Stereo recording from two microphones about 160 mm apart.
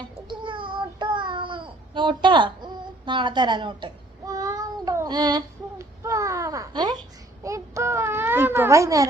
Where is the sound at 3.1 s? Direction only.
30° right (ahead or behind).